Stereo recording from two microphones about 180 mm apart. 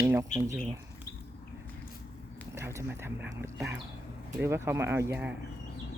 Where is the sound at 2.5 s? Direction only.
15° right (ahead or behind).